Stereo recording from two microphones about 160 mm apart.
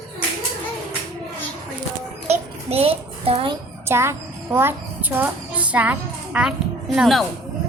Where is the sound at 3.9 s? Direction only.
15° right (ahead or behind); by 7.2 s centre (ahead or behind).